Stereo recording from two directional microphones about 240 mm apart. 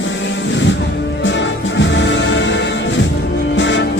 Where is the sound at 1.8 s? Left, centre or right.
Left.